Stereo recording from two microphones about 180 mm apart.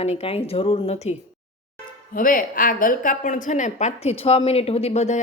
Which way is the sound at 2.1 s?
50° left (ahead or behind).